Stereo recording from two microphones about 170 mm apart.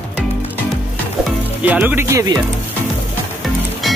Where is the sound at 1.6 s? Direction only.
10° right (ahead or behind).